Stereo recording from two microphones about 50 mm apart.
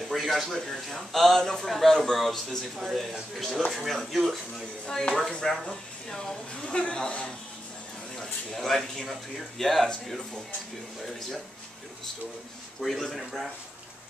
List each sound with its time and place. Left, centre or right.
0.0 s a man's voice: centre
4.8 s a woman's voice: centre
8.2 s a man's voice: centre
12.8 s a man's voice: centre